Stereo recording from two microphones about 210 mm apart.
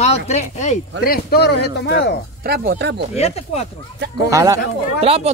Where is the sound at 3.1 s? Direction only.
30° left (ahead or behind).